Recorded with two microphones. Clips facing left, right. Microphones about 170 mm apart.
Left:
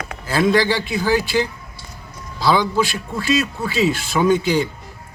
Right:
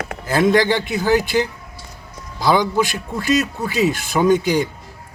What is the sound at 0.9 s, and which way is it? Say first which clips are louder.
Speech: right 2 dB; 20° right (ahead or behind).